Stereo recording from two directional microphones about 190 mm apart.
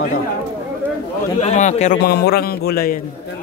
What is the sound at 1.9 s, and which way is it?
Speech, 60° left (ahead or behind).